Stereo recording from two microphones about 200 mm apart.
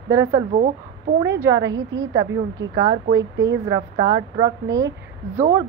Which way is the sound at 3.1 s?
65° right (ahead or behind).